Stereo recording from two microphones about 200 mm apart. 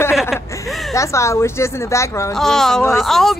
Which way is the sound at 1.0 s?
15° left (ahead or behind).